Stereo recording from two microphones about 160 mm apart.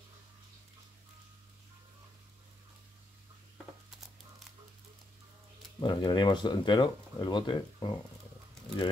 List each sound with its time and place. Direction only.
5.8 s speech: 30° left (ahead or behind)